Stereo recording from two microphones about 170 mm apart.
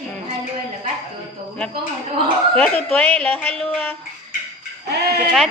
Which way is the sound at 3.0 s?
5° left (ahead or behind).